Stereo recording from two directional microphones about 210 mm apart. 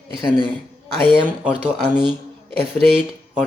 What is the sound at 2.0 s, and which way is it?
Speech, 25° right (ahead or behind).